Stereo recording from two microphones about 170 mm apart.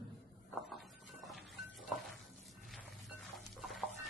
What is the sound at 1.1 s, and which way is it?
Music, centre (ahead or behind).